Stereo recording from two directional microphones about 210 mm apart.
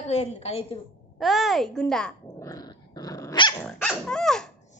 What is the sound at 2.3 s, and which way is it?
Dog, 15° left (ahead or behind).